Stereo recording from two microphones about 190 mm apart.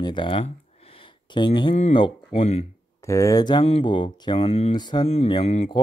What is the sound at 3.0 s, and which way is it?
Speech, 15° left (ahead or behind).